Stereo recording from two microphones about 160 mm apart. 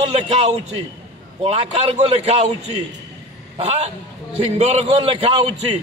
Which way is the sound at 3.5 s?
40° right (ahead or behind).